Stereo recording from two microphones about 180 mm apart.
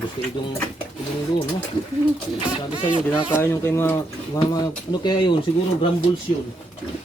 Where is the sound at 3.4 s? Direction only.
15° left (ahead or behind).